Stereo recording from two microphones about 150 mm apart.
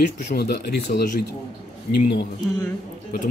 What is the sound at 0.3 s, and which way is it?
Speech, 90° left.